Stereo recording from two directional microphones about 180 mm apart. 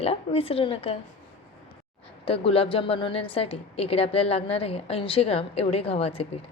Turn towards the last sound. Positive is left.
turn(degrees=35)  # may be behind; listen again after turning